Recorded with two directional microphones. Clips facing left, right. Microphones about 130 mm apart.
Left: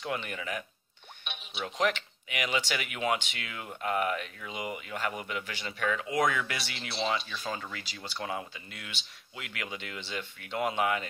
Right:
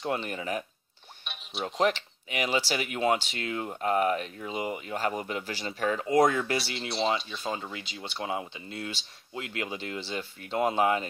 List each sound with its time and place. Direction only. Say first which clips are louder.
0.0 s speech: right 4 dB; 35° right (ahead or behind)
1.2 s music: right 2 dB; centre (ahead or behind)
1.6 s speech: right 3 dB; 35° right (ahead or behind)